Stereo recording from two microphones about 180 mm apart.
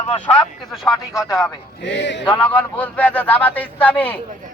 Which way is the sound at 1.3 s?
20° left (ahead or behind).